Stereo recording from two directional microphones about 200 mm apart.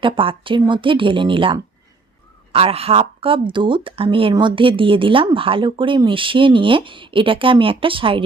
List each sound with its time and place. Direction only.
0.0 s speech: 25° right (ahead or behind)